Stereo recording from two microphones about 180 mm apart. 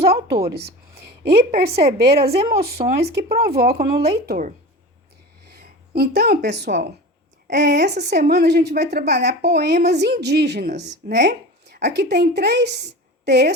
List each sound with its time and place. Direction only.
0.0 s a sound: 60° right (ahead or behind)
1.5 s a woman's voice: 60° right (ahead or behind)
4.3 s speech: 45° right (ahead or behind)
5.5 s a woman's voice: 60° right (ahead or behind)